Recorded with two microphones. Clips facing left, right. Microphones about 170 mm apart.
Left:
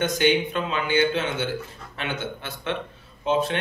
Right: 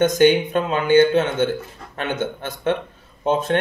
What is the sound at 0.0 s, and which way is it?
Speech, 45° right (ahead or behind).